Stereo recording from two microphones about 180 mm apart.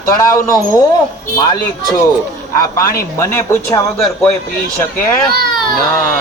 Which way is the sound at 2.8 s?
55° left (ahead or behind).